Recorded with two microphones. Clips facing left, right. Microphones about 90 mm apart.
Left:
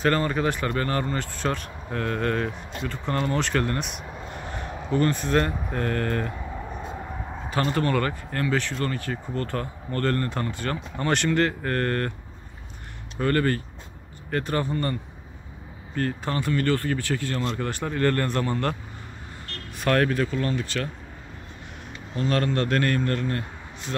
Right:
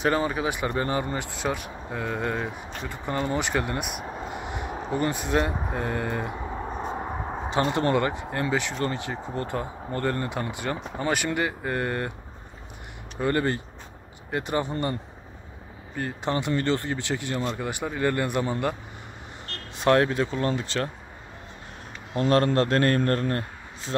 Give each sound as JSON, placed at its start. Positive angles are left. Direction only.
{"t": 0.0, "sound": "speech", "side_deg": -10}
{"t": 4.3, "sound": "a sound", "side_deg": -15}
{"t": 4.9, "sound": "speech", "side_deg": -15}
{"t": 6.8, "sound": "vehicle", "side_deg": -45}
{"t": 7.4, "sound": "speech", "side_deg": -25}
{"t": 13.2, "sound": "speech", "side_deg": -20}
{"t": 19.4, "sound": "speech", "side_deg": -30}
{"t": 22.1, "sound": "a man's voice", "side_deg": -40}
{"t": 22.9, "sound": "a man's voice", "side_deg": -45}